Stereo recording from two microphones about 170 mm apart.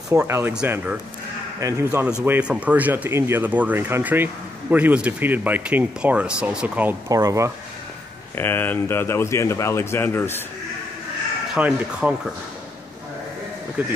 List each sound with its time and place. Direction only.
0.1 s speech: 15° right (ahead or behind)
1.6 s speech: 20° right (ahead or behind)
7.1 s speech: 20° right (ahead or behind)
8.4 s speech: 10° left (ahead or behind)
11.5 s speech: 5° right (ahead or behind)
13.8 s speech: 10° right (ahead or behind)